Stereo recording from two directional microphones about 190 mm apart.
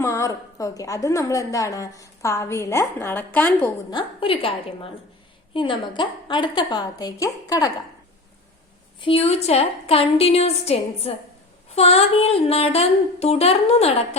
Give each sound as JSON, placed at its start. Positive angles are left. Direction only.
{"t": 0.0, "sound": "a woman's voice", "side_deg": 15}
{"t": 3.9, "sound": "a woman's voice", "side_deg": 30}
{"t": 9.0, "sound": "a sound", "side_deg": 30}